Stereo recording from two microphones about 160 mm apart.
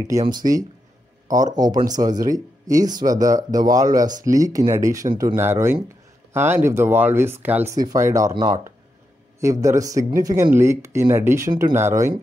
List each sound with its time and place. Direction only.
0.1 s speech: 25° right (ahead or behind)